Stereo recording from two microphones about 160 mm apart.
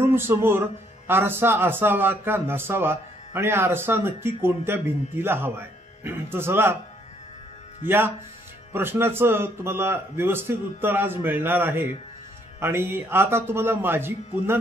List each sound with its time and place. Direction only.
0.0 s a man's voice: 15° right (ahead or behind)
7.8 s a man's voice: 15° right (ahead or behind)